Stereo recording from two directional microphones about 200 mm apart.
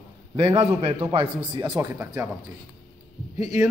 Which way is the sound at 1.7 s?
15° right (ahead or behind).